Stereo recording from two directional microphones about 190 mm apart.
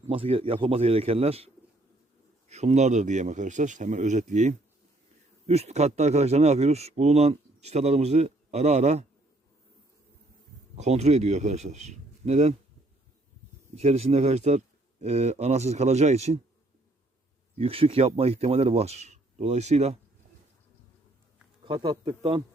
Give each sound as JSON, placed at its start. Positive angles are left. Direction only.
{"t": 0.1, "sound": "speech", "side_deg": -30}
{"t": 2.5, "sound": "speech", "side_deg": -35}
{"t": 10.8, "sound": "speech", "side_deg": -35}
{"t": 13.7, "sound": "speech", "side_deg": -35}
{"t": 17.6, "sound": "speech", "side_deg": -30}
{"t": 21.6, "sound": "a man's voice", "side_deg": -25}